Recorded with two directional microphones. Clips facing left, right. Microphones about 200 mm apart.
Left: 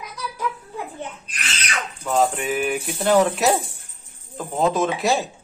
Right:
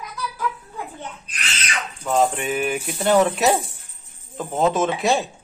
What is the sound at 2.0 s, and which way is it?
A man's voice, centre (ahead or behind).